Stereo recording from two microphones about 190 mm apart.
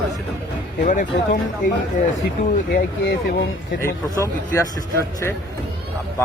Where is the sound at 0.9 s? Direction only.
40° left (ahead or behind).